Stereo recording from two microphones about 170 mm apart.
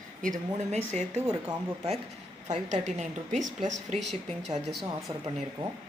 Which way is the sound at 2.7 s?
45° right (ahead or behind).